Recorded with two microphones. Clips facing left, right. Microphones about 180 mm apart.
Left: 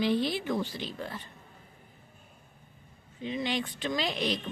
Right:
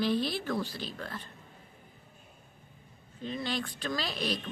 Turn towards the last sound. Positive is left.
turn(degrees=20)  # may be behind; listen again after turning